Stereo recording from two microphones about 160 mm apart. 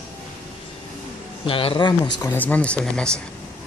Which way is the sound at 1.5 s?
35° left (ahead or behind).